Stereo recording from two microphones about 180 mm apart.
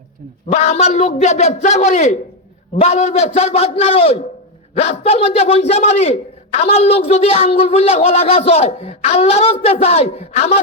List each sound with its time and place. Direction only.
0.4 s a man's voice: 35° left (ahead or behind)